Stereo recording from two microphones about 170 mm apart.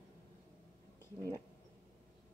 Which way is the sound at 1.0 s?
15° left (ahead or behind).